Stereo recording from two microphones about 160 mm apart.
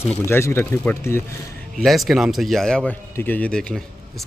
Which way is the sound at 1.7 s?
Centre (ahead or behind).